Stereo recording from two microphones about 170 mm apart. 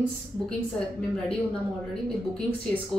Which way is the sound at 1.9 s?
5° left (ahead or behind).